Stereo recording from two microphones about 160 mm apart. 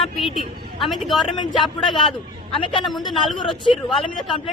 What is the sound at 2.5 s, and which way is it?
Speech, 35° left (ahead or behind).